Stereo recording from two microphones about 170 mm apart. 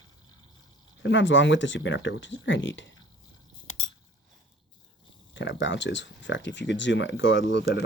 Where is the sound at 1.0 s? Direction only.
90° left.